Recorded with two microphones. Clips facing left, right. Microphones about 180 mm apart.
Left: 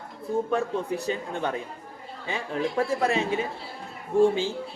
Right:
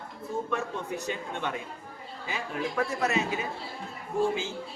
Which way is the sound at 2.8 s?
30° left (ahead or behind).